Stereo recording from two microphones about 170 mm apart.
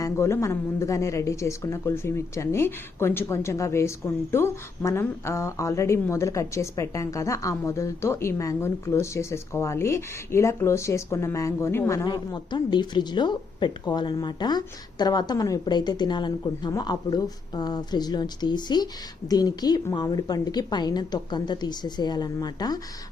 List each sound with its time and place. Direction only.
0.0 s a woman's voice: 15° left (ahead or behind)